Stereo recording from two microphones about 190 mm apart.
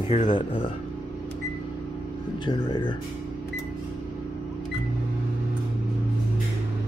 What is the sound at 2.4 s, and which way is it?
Speech, 25° left (ahead or behind).